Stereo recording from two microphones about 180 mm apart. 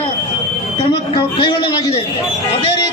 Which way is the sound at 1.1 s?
25° left (ahead or behind).